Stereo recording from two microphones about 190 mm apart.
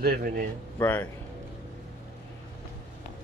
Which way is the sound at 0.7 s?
10° left (ahead or behind).